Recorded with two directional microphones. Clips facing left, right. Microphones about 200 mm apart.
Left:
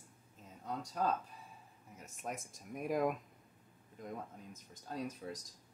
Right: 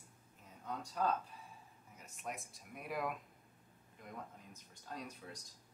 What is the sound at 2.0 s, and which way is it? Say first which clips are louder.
Speech: left 3 dB; 45° left (ahead or behind).